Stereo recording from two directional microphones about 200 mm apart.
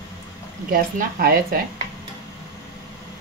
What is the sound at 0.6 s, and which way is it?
Speech, 45° right (ahead or behind).